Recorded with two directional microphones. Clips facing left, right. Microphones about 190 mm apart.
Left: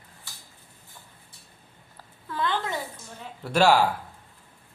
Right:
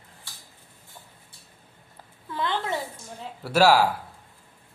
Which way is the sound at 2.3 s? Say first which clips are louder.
Even; 25° right (ahead or behind).